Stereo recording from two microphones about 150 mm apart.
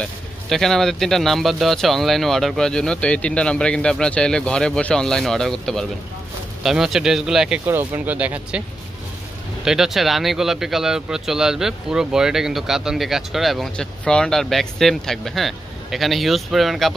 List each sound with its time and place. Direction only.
0.0 s speech: centre (ahead or behind)
9.7 s speech: centre (ahead or behind)